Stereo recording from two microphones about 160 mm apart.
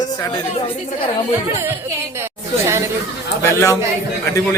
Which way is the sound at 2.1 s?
15° right (ahead or behind).